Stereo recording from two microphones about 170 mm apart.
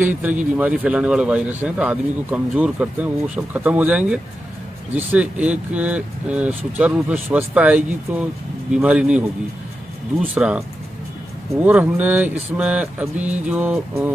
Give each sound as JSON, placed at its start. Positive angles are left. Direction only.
{"t": 0.0, "sound": "a man's voice", "side_deg": -10}
{"t": 10.2, "sound": "a man's voice", "side_deg": -5}
{"t": 11.6, "sound": "a man's voice", "side_deg": -10}